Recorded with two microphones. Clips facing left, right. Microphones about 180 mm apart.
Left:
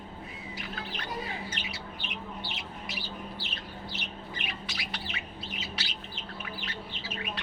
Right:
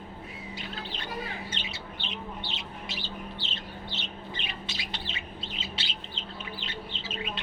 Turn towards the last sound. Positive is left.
turn(degrees=-25)  # may be behind; listen again after turning